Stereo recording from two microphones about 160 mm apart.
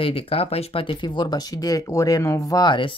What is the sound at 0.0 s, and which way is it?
Speech, 35° left (ahead or behind).